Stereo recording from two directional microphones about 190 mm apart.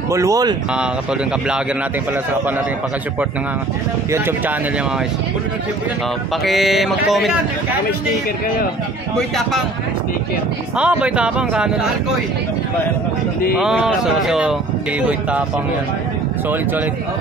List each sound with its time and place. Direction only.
0.1 s speech: 15° right (ahead or behind)
4.1 s speech: 10° right (ahead or behind)
6.4 s speech: centre (ahead or behind)
10.8 s speech: 5° right (ahead or behind)
13.6 s speech: 5° right (ahead or behind)